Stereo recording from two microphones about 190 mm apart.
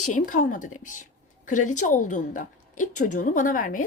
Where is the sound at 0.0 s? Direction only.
40° left (ahead or behind).